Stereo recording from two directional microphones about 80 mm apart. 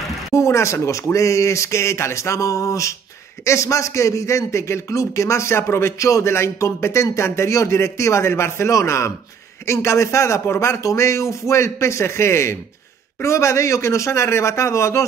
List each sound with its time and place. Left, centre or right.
0.3 s a man's voice: left